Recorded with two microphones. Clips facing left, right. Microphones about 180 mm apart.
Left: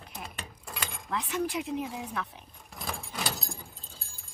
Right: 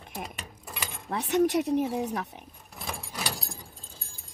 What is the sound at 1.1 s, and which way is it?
Speech, 45° right (ahead or behind).